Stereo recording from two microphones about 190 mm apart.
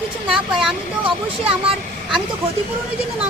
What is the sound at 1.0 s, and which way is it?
Speech, 30° right (ahead or behind).